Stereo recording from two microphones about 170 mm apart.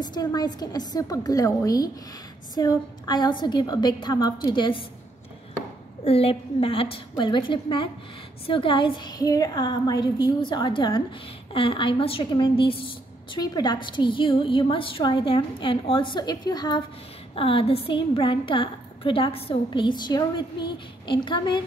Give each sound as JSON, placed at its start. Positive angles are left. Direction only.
{"t": 0.0, "sound": "a woman's voice", "side_deg": 25}
{"t": 6.0, "sound": "a woman's voice", "side_deg": 35}